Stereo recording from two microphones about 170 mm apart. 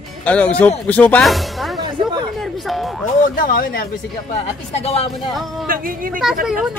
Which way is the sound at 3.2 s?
55° left (ahead or behind).